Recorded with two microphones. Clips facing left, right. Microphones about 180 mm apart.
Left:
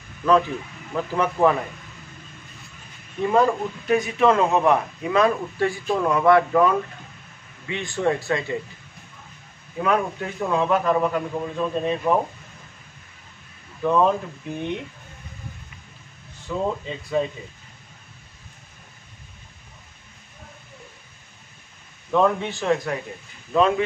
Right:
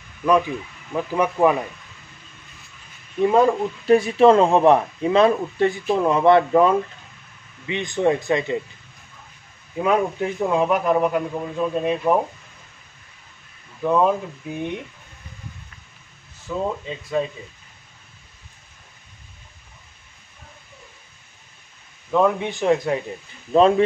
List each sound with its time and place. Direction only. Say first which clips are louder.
0.2 s a man's voice: even; 15° right (ahead or behind)
3.8 s a man's voice: right 5 dB; 30° right (ahead or behind)
9.8 s a man's voice: right 3 dB; 20° right (ahead or behind)
13.8 s a man's voice: right 1 dB; 10° right (ahead or behind)
16.4 s speech: even; centre (ahead or behind)
22.1 s a man's voice: right 1 dB; 5° right (ahead or behind)
22.5 s a man's voice: right 4 dB; 20° right (ahead or behind)
23.5 s speech: right 4 dB; 35° right (ahead or behind)